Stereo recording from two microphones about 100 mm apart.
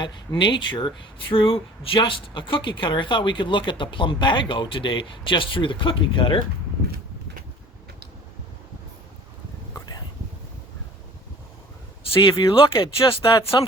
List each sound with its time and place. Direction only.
0.0 s speech: 50° left (ahead or behind)
9.7 s whispering: 40° left (ahead or behind)
12.3 s speech: 30° left (ahead or behind)
12.5 s speech: 55° left (ahead or behind)